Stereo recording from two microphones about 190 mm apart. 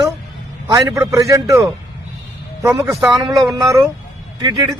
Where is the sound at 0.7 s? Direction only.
20° right (ahead or behind).